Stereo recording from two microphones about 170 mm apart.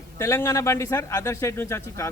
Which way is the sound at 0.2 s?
15° left (ahead or behind).